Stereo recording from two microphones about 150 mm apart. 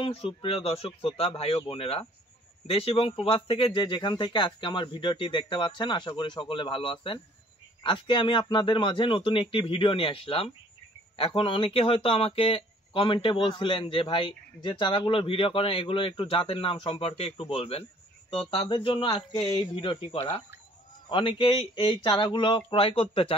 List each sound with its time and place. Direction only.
0.0 s a man's voice: 40° left (ahead or behind)